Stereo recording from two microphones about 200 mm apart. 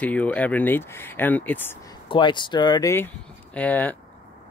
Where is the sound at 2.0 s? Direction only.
25° left (ahead or behind); by 3.9 s 5° left (ahead or behind).